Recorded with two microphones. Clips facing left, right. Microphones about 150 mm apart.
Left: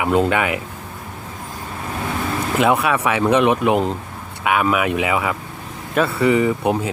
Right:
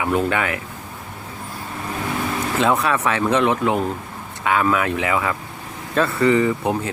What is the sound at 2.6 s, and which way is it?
Speech, 10° left (ahead or behind).